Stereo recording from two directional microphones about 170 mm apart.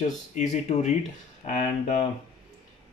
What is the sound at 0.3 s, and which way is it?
Speech, 45° left (ahead or behind).